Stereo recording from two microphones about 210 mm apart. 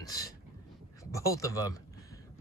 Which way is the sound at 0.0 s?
15° left (ahead or behind).